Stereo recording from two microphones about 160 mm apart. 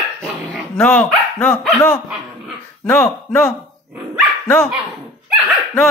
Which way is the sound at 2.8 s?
5° left (ahead or behind).